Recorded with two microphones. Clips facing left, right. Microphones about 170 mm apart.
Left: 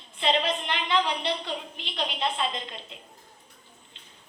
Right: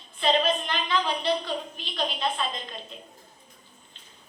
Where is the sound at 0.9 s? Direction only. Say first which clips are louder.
Right 1 dB; 20° left (ahead or behind).